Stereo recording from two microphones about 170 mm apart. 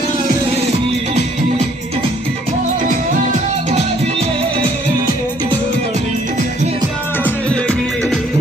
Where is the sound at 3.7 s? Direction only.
35° right (ahead or behind).